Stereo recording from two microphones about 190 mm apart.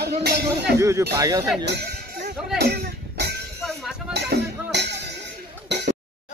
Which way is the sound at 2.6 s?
55° right (ahead or behind).